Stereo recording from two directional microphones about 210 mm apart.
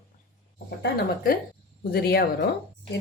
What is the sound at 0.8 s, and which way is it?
Speech, 45° left (ahead or behind).